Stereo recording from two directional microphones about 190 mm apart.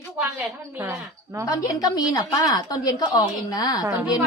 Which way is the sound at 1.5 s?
20° left (ahead or behind).